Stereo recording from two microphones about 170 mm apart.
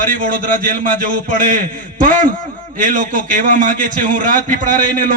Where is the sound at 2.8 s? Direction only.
50° right (ahead or behind).